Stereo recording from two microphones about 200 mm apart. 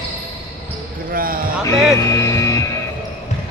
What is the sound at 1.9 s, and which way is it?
Music, 15° left (ahead or behind).